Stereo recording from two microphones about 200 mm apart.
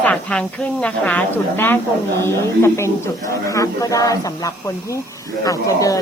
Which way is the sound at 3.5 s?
15° left (ahead or behind).